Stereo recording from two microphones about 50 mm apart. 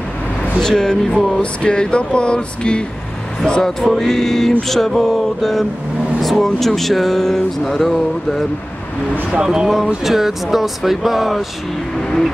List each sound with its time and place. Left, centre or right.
0.6 s speech: centre
1.4 s a sound: centre
3.4 s speech: centre
9.3 s speech: centre